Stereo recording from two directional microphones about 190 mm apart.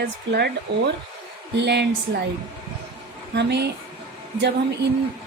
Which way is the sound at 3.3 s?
65° right (ahead or behind).